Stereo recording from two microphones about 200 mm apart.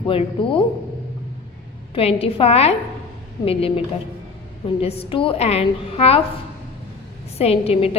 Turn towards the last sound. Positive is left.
turn(degrees=30)  # may be behind; listen again after turning